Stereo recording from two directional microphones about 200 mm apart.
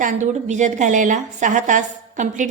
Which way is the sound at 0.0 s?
35° right (ahead or behind).